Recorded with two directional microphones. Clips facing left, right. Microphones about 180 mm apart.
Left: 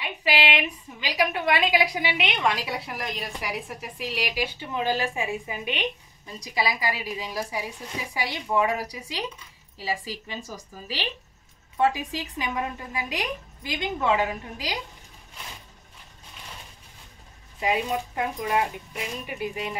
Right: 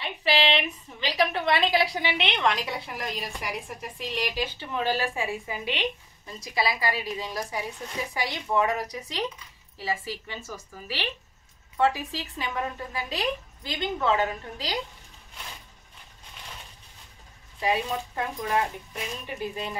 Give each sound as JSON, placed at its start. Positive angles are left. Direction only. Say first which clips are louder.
{"t": 0.0, "sound": "a woman's voice", "louder": "right 1 dB", "side_deg": 15}
{"t": 17.6, "sound": "a woman's voice", "louder": "left 1 dB", "side_deg": 20}